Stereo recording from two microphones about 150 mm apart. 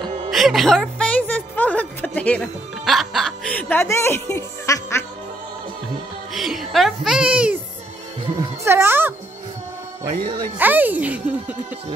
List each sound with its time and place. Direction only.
0.3 s music: centre (ahead or behind); by 5.0 s 20° left (ahead or behind)
6.3 s a child's voice: centre (ahead or behind)
8.4 s speech: 15° right (ahead or behind)
10.6 s speech: 10° right (ahead or behind)